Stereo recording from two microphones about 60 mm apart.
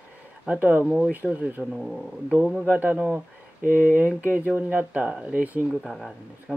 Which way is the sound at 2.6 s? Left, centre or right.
Right.